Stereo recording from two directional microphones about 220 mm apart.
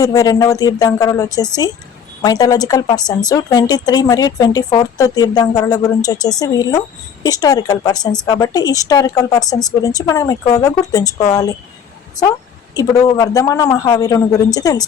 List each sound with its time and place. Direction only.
0.0 s a woman's voice: 15° left (ahead or behind)
12.7 s a woman's voice: 15° left (ahead or behind)